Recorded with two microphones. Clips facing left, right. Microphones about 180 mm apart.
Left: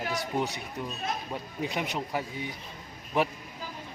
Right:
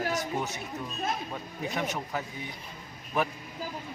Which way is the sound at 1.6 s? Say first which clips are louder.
Right 1 dB; 15° left (ahead or behind).